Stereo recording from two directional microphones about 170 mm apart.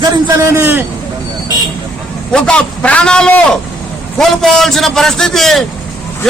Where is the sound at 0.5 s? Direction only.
10° right (ahead or behind).